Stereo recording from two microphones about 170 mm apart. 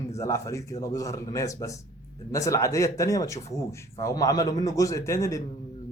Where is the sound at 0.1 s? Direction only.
20° left (ahead or behind).